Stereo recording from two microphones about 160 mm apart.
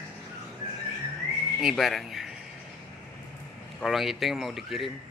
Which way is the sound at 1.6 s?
Centre (ahead or behind).